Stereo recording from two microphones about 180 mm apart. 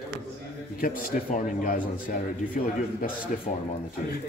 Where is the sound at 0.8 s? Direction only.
50° left (ahead or behind).